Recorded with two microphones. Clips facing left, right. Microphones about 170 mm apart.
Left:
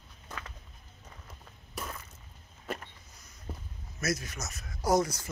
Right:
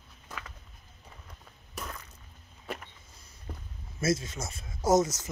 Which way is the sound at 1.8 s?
5° left (ahead or behind).